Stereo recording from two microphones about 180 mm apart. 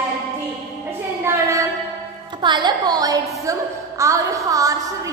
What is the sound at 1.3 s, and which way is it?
Child singing, 15° right (ahead or behind).